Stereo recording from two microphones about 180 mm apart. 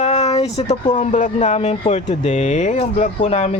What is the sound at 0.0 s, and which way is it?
Speech, 40° left (ahead or behind).